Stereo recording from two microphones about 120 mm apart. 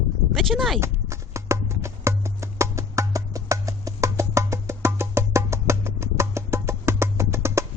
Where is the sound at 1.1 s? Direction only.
25° right (ahead or behind).